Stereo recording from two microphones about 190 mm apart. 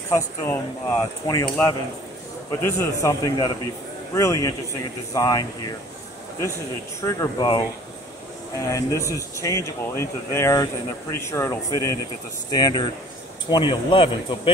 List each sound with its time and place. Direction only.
0.1 s speech: 15° left (ahead or behind)
7.1 s speech: 20° left (ahead or behind)
8.6 s speech: 15° left (ahead or behind)